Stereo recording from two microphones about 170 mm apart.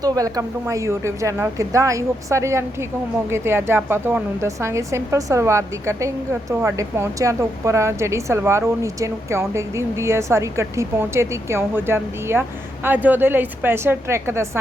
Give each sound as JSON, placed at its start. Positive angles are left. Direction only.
{"t": 0.0, "sound": "a woman's voice", "side_deg": -20}